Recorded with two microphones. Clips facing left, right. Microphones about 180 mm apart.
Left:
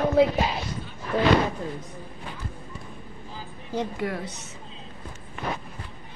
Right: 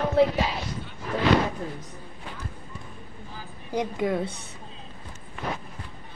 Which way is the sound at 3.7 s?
20° right (ahead or behind).